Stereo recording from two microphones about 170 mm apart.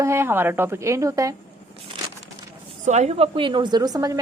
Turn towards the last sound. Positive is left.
turn(degrees=-20)  # may be behind; listen again after turning